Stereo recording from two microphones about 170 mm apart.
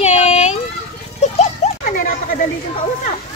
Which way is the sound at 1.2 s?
40° left (ahead or behind).